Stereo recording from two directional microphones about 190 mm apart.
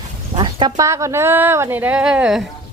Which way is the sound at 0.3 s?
25° right (ahead or behind).